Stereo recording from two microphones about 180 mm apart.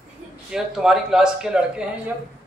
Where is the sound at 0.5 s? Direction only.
5° right (ahead or behind).